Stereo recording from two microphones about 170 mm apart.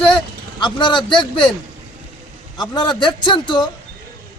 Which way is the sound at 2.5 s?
25° left (ahead or behind).